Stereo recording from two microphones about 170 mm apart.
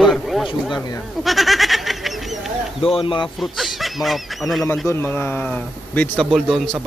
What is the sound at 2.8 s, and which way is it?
Speech, 35° left (ahead or behind).